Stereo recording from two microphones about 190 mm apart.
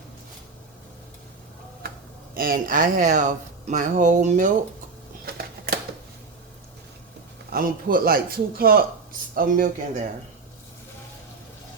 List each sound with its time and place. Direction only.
2.3 s speech: 50° right (ahead or behind)
7.5 s speech: 50° right (ahead or behind)